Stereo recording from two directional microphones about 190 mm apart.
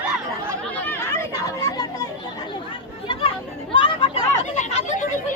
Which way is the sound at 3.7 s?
25° left (ahead or behind).